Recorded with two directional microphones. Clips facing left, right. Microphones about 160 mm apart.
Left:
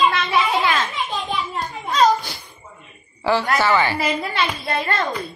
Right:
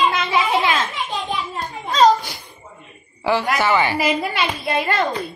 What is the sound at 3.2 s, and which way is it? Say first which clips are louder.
A woman's voice: even; 15° right (ahead or behind).